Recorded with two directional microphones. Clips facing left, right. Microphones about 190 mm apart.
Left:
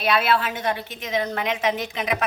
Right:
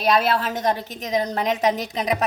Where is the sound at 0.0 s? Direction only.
40° right (ahead or behind).